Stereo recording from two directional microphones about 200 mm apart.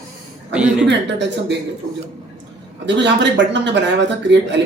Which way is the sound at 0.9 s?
60° right (ahead or behind).